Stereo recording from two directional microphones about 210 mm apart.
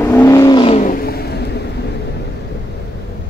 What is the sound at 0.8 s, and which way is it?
Vehicle, 45° left (ahead or behind).